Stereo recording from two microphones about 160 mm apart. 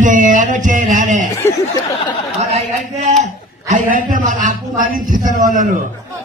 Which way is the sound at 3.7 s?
55° right (ahead or behind).